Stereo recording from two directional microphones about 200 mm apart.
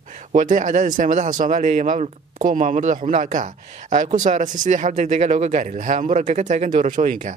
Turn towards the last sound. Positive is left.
turn(degrees=-40)  # may be behind; listen again after turning